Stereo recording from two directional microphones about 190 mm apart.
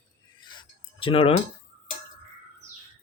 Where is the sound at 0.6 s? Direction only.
30° left (ahead or behind).